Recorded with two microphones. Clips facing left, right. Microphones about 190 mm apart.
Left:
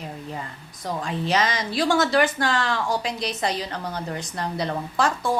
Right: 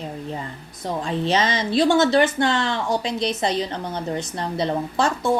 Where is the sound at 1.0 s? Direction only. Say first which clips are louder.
Right 2 dB; 25° right (ahead or behind).